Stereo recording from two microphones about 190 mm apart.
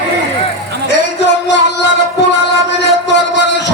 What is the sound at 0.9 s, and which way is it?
Music, 65° left (ahead or behind).